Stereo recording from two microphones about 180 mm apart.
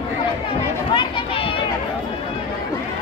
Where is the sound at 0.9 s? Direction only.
30° left (ahead or behind).